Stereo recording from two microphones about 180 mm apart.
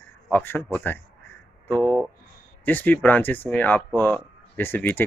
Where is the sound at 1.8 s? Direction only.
20° right (ahead or behind).